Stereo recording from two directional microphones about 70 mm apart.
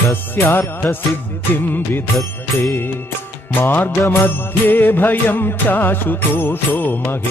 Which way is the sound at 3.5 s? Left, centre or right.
Left.